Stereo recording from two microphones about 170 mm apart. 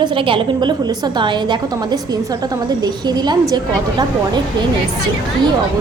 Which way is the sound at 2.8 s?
25° right (ahead or behind).